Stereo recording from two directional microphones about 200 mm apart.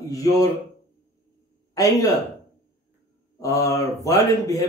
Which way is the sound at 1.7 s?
15° left (ahead or behind).